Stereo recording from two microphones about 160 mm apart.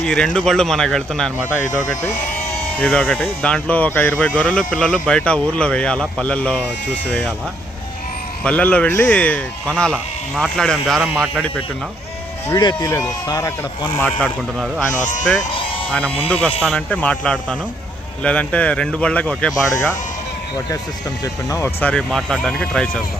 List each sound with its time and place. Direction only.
0.0 s speech: 5° left (ahead or behind)
2.7 s speech: 10° left (ahead or behind)
8.4 s speech: 10° left (ahead or behind)
12.5 s speech: 25° left (ahead or behind)
15.9 s speech: 10° left (ahead or behind)
21.5 s speech: 15° left (ahead or behind)